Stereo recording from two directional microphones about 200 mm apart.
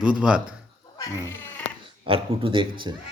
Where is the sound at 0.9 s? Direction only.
15° left (ahead or behind).